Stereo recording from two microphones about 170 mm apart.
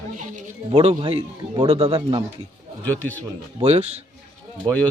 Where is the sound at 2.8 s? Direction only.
10° left (ahead or behind).